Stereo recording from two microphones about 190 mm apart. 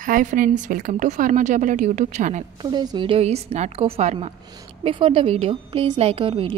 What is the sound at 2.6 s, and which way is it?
A woman's voice, 20° right (ahead or behind).